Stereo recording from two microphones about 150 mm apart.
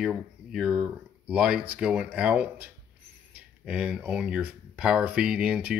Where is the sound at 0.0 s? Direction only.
5° right (ahead or behind).